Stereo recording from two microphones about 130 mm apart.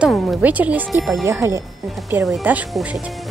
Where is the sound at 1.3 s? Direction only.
20° right (ahead or behind).